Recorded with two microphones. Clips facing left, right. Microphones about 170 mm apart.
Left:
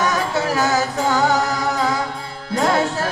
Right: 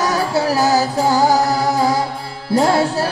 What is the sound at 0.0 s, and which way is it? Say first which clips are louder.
Music: right 3 dB; 35° right (ahead or behind).